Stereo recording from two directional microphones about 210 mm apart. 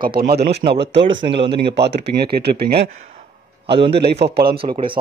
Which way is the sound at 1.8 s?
50° right (ahead or behind).